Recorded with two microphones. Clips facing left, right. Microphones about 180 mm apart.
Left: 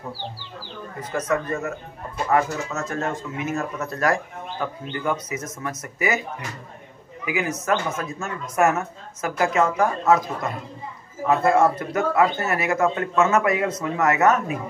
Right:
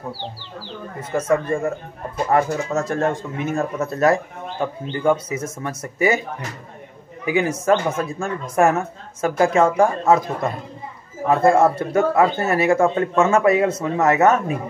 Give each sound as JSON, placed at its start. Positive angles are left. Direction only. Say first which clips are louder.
{"t": 1.1, "sound": "speech", "louder": "right 5 dB", "side_deg": -25}
{"t": 7.2, "sound": "speech", "louder": "right 6 dB", "side_deg": -30}
{"t": 11.2, "sound": "speech", "louder": "right 3 dB", "side_deg": -25}